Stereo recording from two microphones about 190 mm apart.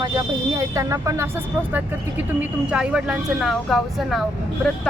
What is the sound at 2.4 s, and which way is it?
Speech, 5° right (ahead or behind).